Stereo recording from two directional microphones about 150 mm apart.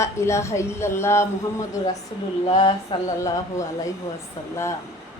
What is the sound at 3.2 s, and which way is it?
Speech, 20° left (ahead or behind).